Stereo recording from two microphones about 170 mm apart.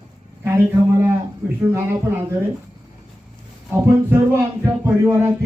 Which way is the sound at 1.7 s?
15° right (ahead or behind).